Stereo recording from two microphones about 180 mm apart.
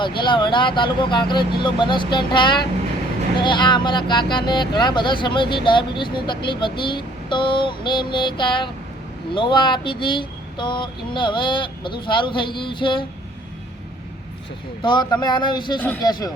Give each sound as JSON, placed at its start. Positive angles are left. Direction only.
{"t": 0.0, "sound": "speech", "side_deg": 25}
{"t": 14.8, "sound": "speech", "side_deg": 25}